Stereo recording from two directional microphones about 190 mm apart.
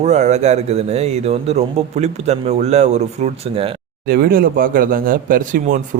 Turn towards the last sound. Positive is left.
turn(degrees=-45)  # may be behind; listen again after turning